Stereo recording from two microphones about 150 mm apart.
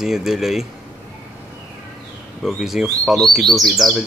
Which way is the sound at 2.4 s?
Centre (ahead or behind).